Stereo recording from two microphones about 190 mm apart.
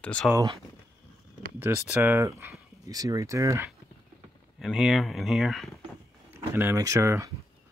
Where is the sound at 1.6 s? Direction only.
10° right (ahead or behind).